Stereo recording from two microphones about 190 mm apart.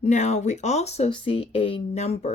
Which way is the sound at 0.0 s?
35° left (ahead or behind).